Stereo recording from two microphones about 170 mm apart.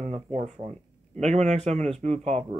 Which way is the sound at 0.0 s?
40° right (ahead or behind).